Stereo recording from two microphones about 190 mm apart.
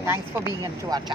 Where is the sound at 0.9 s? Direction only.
20° right (ahead or behind).